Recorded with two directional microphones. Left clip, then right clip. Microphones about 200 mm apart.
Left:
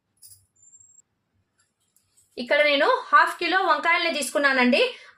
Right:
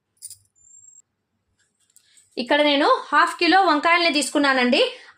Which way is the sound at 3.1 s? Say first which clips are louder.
Right 2 dB; 45° right (ahead or behind).